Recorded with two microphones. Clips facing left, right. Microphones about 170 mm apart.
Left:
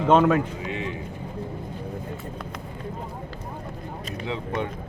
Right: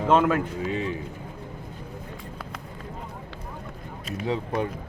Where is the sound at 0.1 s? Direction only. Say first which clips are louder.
Left 3 dB; 5° left (ahead or behind).